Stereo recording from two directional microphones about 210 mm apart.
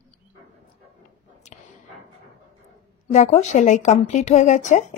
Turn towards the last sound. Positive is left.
turn(degrees=35)  # may be behind; listen again after turning